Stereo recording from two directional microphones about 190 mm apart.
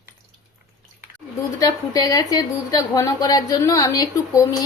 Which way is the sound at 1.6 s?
20° left (ahead or behind).